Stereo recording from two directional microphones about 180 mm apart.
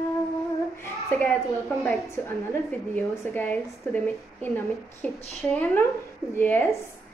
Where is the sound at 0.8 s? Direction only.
10° left (ahead or behind).